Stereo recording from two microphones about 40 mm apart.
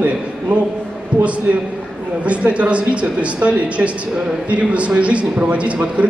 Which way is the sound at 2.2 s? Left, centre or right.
Right.